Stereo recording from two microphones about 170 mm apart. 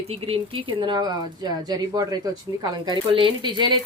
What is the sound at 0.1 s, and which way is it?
Speech, 30° right (ahead or behind).